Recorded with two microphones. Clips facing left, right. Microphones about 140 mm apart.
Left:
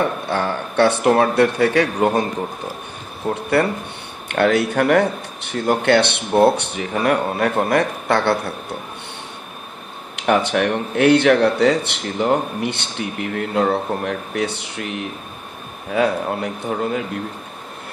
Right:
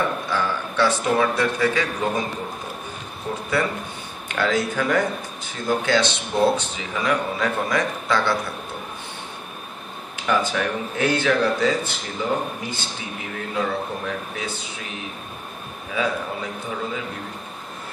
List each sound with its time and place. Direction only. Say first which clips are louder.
0.3 s speech: left 3 dB; 60° left (ahead or behind)
3.3 s speech: left 6 dB; 55° left (ahead or behind)
10.1 s speech: left 5 dB; 65° left (ahead or behind)